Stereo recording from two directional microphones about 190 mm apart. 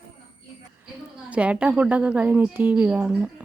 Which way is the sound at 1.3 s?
5° right (ahead or behind).